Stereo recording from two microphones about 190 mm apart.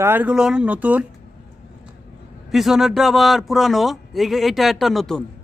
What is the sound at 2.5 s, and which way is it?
A man's voice, centre (ahead or behind).